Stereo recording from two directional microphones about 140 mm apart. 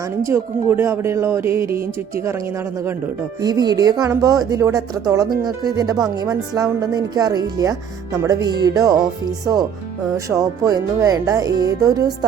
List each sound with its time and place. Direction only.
0.2 s speech: 20° right (ahead or behind)
3.4 s speech: 30° right (ahead or behind)
10.2 s speech: 25° right (ahead or behind)